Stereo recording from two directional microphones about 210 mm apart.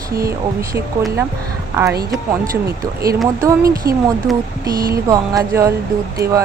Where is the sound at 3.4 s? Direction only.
15° right (ahead or behind).